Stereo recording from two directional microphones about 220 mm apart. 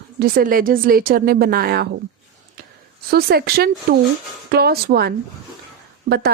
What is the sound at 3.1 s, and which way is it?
Speech, 45° right (ahead or behind).